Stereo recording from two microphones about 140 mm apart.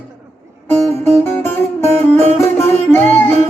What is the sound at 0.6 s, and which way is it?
A man's voice, 15° left (ahead or behind).